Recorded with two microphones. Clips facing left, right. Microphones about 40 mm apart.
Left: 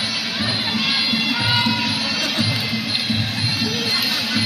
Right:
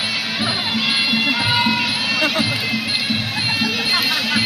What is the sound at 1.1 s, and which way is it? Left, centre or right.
Music, centre.